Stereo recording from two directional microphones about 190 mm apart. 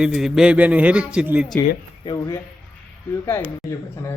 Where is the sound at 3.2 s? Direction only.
10° left (ahead or behind).